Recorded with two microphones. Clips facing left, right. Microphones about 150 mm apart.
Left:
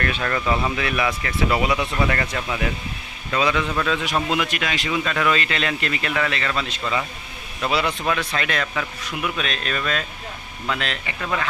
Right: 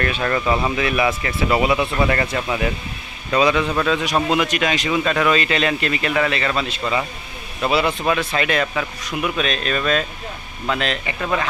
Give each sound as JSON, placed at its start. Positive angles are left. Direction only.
{"t": 0.0, "sound": "a man's voice", "side_deg": -20}
{"t": 7.8, "sound": "speech", "side_deg": -25}
{"t": 8.4, "sound": "speech", "side_deg": -10}
{"t": 8.7, "sound": "speech", "side_deg": -20}